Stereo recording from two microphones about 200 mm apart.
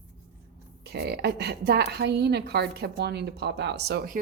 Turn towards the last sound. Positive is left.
turn(degrees=-55)  # may be behind; listen again after turning